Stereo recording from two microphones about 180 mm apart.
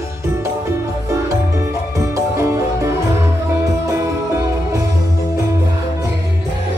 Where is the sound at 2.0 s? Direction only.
15° right (ahead or behind).